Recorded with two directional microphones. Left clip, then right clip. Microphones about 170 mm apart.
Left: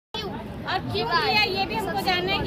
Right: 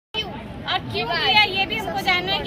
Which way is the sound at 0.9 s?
15° right (ahead or behind).